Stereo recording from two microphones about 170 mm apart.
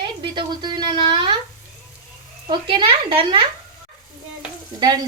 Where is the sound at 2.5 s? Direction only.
30° right (ahead or behind).